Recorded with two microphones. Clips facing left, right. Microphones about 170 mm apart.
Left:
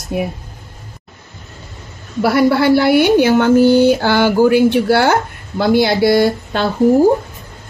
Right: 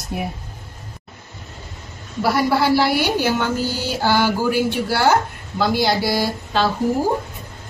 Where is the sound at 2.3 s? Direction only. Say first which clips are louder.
Left 6 dB; 60° left (ahead or behind).